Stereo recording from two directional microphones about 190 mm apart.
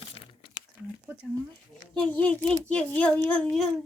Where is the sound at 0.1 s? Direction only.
25° left (ahead or behind).